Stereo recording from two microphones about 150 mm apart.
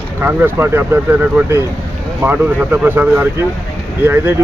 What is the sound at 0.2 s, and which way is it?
Speech, 15° right (ahead or behind).